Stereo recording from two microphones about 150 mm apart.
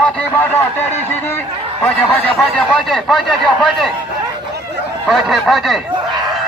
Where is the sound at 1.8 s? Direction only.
10° left (ahead or behind).